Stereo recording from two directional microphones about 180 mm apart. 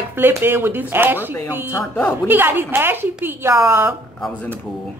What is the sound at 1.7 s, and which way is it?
Speech, 15° left (ahead or behind).